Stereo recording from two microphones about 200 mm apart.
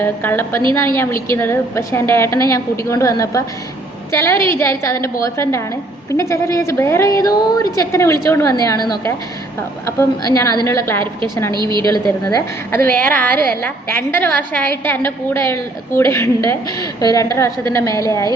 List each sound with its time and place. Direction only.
0.0 s a woman's voice: 10° left (ahead or behind)
11.5 s a woman's voice: 20° right (ahead or behind)
11.9 s a woman's voice: 15° left (ahead or behind)